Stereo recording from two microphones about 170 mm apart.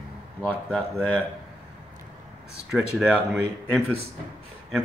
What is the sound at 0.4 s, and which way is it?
Speech, 10° left (ahead or behind).